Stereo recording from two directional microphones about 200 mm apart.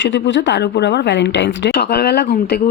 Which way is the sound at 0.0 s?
65° left (ahead or behind).